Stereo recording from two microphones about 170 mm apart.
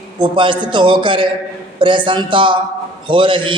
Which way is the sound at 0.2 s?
30° right (ahead or behind).